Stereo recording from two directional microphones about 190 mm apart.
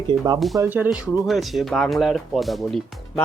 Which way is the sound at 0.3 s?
Centre (ahead or behind).